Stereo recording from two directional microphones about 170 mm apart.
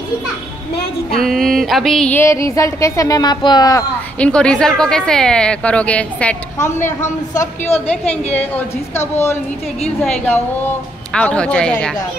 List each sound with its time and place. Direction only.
1.2 s a sound: centre (ahead or behind); by 3.8 s 25° left (ahead or behind)
4.2 s a woman's voice: 5° left (ahead or behind)
10.0 s a woman's voice: 5° left (ahead or behind)